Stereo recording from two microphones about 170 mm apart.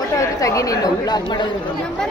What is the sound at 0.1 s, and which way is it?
Speech, 20° left (ahead or behind).